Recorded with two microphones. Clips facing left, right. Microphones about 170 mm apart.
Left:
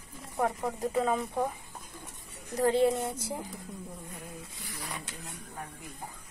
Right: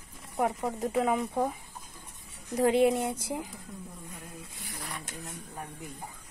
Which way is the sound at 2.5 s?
15° right (ahead or behind).